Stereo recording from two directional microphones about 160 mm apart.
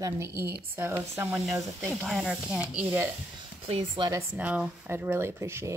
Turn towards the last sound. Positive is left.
turn(degrees=-15)  # may be behind; listen again after turning